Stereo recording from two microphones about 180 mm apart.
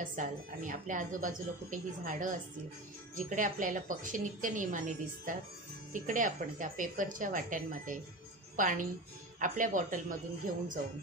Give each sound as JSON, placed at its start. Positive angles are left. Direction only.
{"t": 0.0, "sound": "a woman's voice", "side_deg": -45}